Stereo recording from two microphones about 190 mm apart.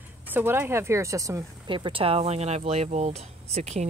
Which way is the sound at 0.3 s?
10° right (ahead or behind).